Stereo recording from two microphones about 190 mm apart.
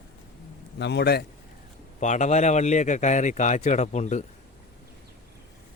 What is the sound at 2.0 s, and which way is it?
A man's voice, 40° left (ahead or behind).